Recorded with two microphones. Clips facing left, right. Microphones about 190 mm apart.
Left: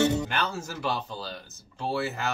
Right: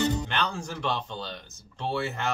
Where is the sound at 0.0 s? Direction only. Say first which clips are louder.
Left 3 dB; 70° left (ahead or behind).